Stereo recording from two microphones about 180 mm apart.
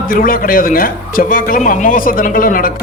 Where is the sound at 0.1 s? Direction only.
50° left (ahead or behind).